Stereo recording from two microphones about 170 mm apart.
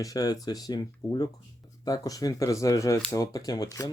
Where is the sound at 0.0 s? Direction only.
20° left (ahead or behind).